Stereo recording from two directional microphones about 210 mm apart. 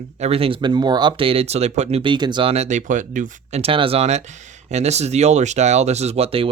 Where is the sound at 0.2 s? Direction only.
30° right (ahead or behind).